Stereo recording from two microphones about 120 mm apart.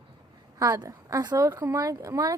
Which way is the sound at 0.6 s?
30° right (ahead or behind).